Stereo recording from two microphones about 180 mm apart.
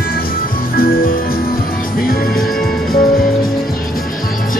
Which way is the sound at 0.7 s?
55° left (ahead or behind).